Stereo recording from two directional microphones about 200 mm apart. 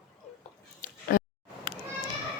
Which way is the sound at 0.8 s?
45° left (ahead or behind).